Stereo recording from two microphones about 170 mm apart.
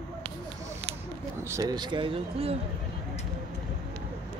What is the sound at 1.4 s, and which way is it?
Speech, 20° right (ahead or behind).